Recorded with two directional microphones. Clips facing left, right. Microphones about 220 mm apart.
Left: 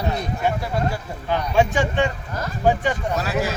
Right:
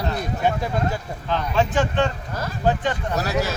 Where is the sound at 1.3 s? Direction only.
15° left (ahead or behind).